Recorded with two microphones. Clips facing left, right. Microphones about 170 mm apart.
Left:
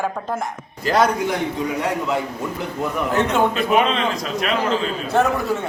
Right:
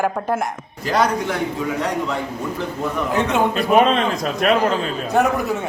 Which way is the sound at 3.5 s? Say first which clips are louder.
Right 3 dB; 40° right (ahead or behind).